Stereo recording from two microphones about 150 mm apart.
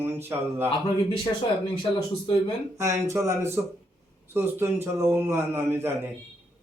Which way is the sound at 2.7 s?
20° right (ahead or behind).